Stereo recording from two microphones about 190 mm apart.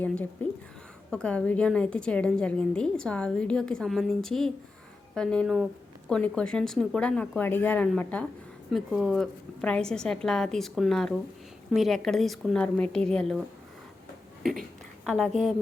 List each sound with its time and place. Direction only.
0.0 s a woman's voice: 5° left (ahead or behind)
15.0 s a woman's voice: 5° left (ahead or behind)